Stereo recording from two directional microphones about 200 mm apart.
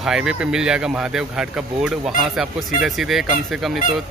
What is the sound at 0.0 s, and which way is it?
Speech, 5° right (ahead or behind).